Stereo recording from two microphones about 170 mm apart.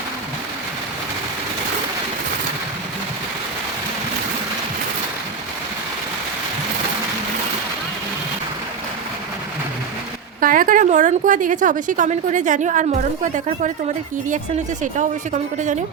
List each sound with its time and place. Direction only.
10.4 s a woman's voice: 55° right (ahead or behind)
14.8 s a woman's voice: 45° right (ahead or behind)